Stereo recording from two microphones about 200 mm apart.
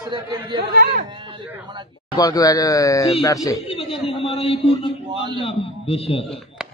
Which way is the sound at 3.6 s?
30° left (ahead or behind).